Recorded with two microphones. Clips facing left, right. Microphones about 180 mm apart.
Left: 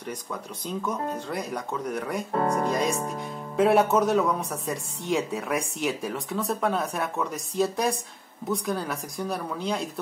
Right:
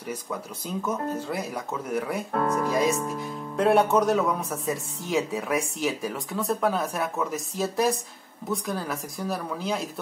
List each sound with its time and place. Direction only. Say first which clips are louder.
0.7 s speech: right 1 dB; 5° right (ahead or behind)